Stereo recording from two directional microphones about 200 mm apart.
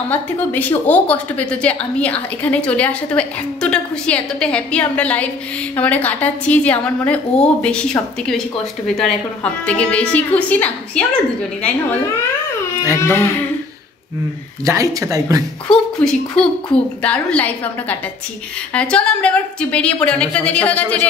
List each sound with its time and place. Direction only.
0.1 s a woman's voice: 10° left (ahead or behind)
13.0 s a woman's voice: 15° left (ahead or behind)
14.6 s speech: 15° right (ahead or behind)
15.7 s a woman's voice: 5° left (ahead or behind)